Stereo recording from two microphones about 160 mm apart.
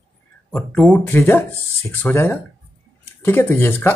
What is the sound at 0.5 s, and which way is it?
Speech, 10° left (ahead or behind).